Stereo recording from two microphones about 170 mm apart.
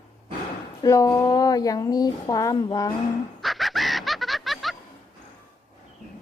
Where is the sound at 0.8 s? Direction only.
20° left (ahead or behind).